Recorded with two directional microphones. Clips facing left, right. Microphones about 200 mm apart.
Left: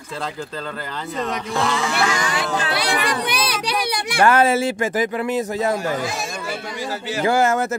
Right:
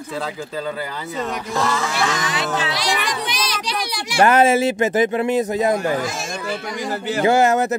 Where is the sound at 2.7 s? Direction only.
60° left (ahead or behind).